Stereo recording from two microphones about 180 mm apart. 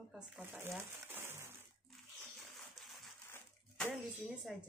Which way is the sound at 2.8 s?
Centre (ahead or behind).